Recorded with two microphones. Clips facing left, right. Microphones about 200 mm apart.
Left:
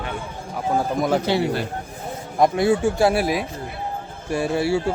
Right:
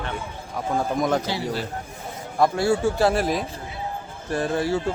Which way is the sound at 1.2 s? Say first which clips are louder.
Left 6 dB; 60° left (ahead or behind).